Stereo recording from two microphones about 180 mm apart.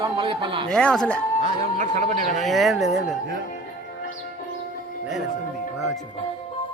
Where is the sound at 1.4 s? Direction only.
40° right (ahead or behind).